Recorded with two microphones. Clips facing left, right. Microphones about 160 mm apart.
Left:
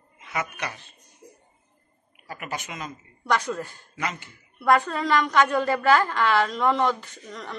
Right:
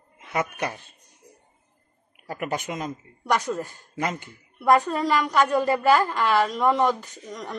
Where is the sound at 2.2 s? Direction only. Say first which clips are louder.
Right 6 dB; 55° right (ahead or behind).